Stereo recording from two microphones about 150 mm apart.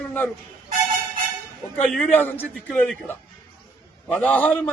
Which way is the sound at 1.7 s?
5° left (ahead or behind).